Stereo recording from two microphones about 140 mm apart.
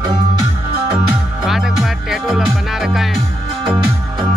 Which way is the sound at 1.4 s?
Centre (ahead or behind).